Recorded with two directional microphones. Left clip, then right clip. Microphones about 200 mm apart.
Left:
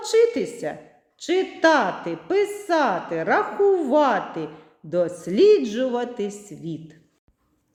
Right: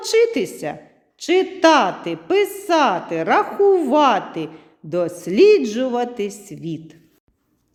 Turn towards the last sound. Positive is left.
turn(degrees=-35)  # may be behind; listen again after turning